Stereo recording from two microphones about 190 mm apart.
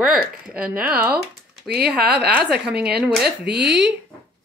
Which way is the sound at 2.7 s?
55° right (ahead or behind).